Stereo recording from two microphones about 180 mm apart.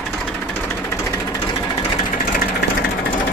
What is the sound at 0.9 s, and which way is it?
Vehicle, 15° left (ahead or behind).